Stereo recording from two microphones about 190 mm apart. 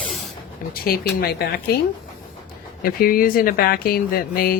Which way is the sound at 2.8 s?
50° left (ahead or behind).